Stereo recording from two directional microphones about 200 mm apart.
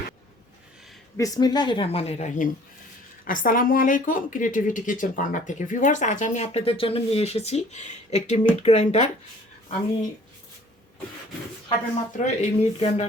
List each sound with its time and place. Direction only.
1.1 s a woman's voice: 20° left (ahead or behind); by 9.0 s 35° left (ahead or behind)
12.1 s a woman's voice: 35° left (ahead or behind)